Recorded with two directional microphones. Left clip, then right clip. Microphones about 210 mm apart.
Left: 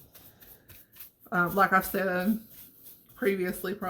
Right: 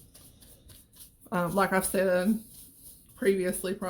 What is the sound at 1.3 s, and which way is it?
Speech, 50° right (ahead or behind).